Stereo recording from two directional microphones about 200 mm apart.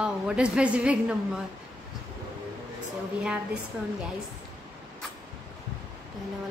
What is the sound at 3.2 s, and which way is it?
Speech, 5° right (ahead or behind).